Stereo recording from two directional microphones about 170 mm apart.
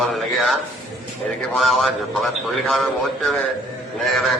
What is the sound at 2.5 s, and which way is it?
A man's voice, centre (ahead or behind).